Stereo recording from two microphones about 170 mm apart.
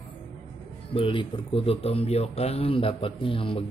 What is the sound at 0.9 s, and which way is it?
A man's voice, 30° left (ahead or behind).